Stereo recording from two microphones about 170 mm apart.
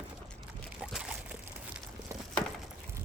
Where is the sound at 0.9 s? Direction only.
5° right (ahead or behind).